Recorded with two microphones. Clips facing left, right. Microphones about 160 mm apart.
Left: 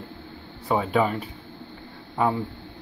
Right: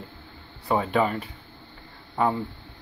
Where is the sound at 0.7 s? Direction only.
Centre (ahead or behind).